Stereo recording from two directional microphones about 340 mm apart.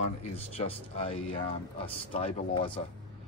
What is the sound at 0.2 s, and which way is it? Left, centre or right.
Speech, centre.